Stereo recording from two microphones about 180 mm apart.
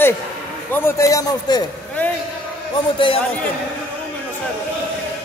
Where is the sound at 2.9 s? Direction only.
30° left (ahead or behind).